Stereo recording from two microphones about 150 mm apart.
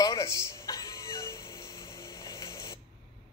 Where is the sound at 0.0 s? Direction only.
20° left (ahead or behind).